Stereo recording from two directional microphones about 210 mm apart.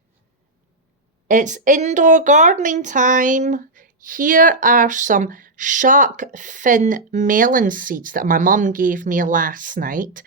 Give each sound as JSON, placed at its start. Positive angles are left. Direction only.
{"t": 1.3, "sound": "speech", "side_deg": -35}